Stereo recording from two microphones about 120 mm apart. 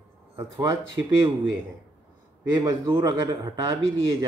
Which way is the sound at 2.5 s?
35° right (ahead or behind).